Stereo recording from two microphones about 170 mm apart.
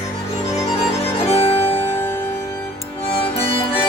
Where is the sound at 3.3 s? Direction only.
35° left (ahead or behind).